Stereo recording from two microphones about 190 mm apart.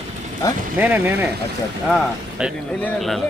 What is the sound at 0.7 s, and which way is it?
Speech, 10° right (ahead or behind).